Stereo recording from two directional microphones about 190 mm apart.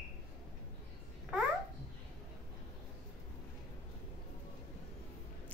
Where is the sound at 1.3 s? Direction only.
5° right (ahead or behind).